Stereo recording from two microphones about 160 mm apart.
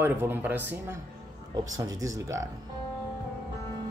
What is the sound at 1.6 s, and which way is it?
Speech, 20° right (ahead or behind).